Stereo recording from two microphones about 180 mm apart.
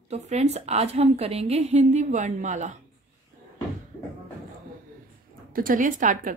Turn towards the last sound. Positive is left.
turn(degrees=-45)  # may be behind; listen again after turning